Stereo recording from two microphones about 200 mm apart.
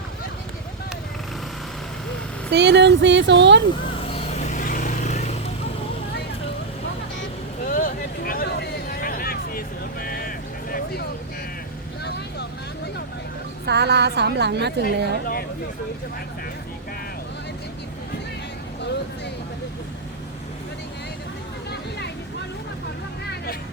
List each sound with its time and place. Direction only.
2.5 s a woman's voice: 60° right (ahead or behind)
4.0 s vehicle: 30° left (ahead or behind)
7.7 s a sound: 45° left (ahead or behind)
12.0 s vehicle: 55° left (ahead or behind)
13.7 s a woman's voice: 55° right (ahead or behind)
21.7 s a sound: 55° left (ahead or behind)